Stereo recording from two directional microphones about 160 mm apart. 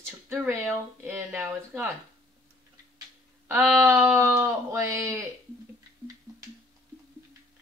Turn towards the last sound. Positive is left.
turn(degrees=-20)  # may be behind; listen again after turning